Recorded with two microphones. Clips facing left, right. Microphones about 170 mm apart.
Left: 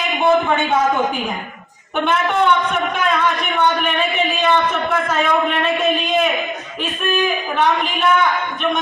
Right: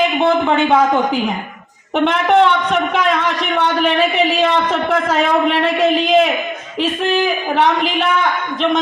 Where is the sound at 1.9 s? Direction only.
85° right.